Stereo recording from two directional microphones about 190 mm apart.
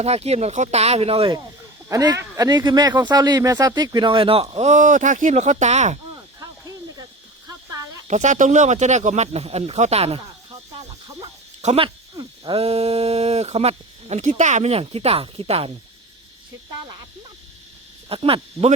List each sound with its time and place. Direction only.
0.0 s speech: 35° right (ahead or behind)
1.9 s a man's voice: 15° right (ahead or behind); by 6.0 s 35° right (ahead or behind)
6.4 s cricket: 20° right (ahead or behind)
8.0 s speech: 40° right (ahead or behind)
11.6 s speech: 35° right (ahead or behind)
18.1 s speech: 30° right (ahead or behind)